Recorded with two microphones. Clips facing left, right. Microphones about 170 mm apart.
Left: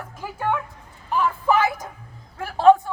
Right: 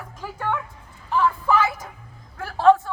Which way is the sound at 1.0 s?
15° left (ahead or behind).